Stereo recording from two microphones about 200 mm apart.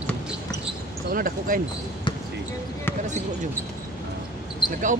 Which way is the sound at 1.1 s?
45° right (ahead or behind).